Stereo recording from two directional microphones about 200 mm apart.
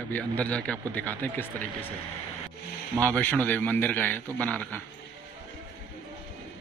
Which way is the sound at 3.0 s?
5° left (ahead or behind).